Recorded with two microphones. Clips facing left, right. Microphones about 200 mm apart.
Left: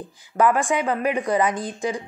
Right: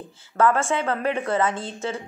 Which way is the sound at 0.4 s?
15° left (ahead or behind).